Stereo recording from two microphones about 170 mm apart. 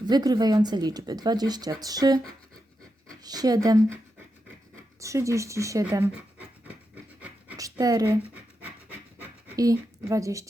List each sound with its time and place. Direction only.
0.1 s speech: 25° right (ahead or behind)
3.2 s speech: 20° right (ahead or behind)
4.9 s speech: 20° right (ahead or behind)
6.9 s rub: 10° right (ahead or behind)
7.5 s pant: 20° right (ahead or behind)